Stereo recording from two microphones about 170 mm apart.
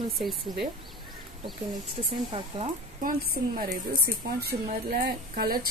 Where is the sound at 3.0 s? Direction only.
55° right (ahead or behind).